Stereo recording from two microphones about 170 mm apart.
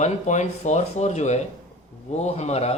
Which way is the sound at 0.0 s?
45° left (ahead or behind).